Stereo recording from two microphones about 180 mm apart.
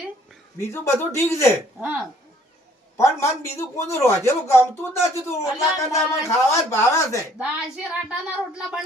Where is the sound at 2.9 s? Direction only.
15° left (ahead or behind).